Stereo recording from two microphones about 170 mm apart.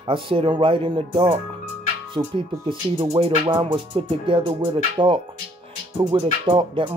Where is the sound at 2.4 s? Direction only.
30° right (ahead or behind).